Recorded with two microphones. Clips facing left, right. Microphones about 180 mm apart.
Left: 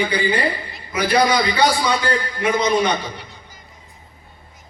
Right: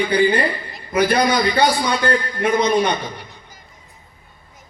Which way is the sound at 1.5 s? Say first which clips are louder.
Even; 55° right (ahead or behind).